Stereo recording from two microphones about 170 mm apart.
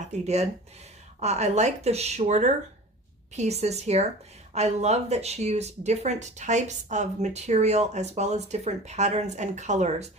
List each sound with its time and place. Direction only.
0.0 s speech: 40° right (ahead or behind)